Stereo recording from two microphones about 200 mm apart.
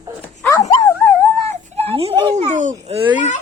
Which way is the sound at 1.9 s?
30° right (ahead or behind).